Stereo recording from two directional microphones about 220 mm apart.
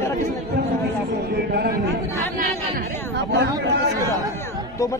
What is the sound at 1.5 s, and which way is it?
Speech, 45° right (ahead or behind).